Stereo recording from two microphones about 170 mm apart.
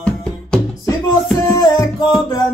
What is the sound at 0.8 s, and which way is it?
Music, 20° left (ahead or behind).